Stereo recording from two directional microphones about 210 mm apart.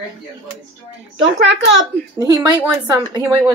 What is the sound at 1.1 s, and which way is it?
Speech, 55° right (ahead or behind).